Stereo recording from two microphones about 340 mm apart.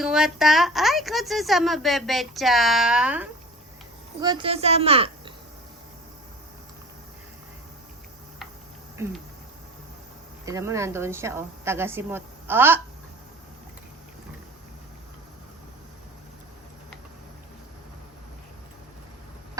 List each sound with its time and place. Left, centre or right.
0.0 s a woman's voice: centre
9.0 s a woman's voice: centre
10.4 s a woman's voice: centre